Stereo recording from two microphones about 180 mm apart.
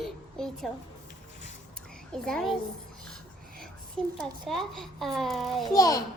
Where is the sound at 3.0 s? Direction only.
Centre (ahead or behind).